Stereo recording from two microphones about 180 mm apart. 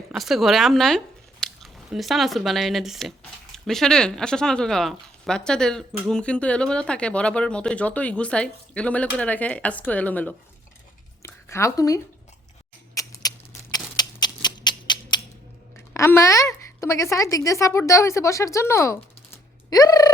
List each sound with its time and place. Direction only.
0.1 s speech: centre (ahead or behind)
11.2 s a sound: 15° left (ahead or behind)
15.9 s a woman's voice: 15° left (ahead or behind)
19.7 s turkey: 20° left (ahead or behind)